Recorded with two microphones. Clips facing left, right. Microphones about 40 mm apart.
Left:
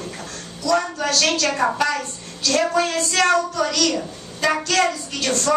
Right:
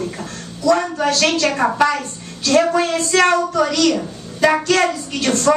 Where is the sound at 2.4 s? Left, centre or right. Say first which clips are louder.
Right 4 dB; right.